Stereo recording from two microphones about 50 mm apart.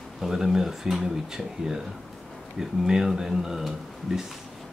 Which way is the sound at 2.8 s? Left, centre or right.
Centre.